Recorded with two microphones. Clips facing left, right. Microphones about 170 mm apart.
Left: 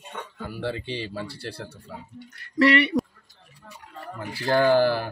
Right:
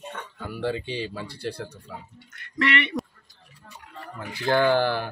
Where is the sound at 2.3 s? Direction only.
35° left (ahead or behind).